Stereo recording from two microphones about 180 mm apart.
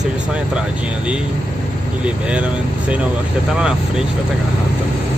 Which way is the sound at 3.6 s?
5° right (ahead or behind).